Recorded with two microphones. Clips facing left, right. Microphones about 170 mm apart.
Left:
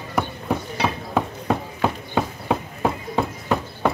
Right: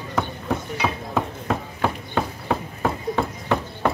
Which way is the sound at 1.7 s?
15° left (ahead or behind).